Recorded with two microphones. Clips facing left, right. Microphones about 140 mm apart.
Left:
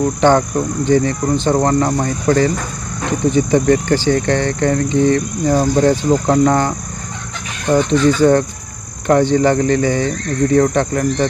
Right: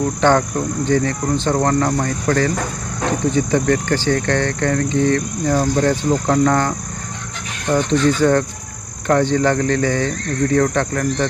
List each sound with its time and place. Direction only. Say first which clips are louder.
0.0 s speech: left 3 dB; 15° left (ahead or behind)